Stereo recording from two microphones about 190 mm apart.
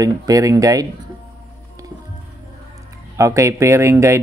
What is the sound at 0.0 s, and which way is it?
Speech, 20° right (ahead or behind).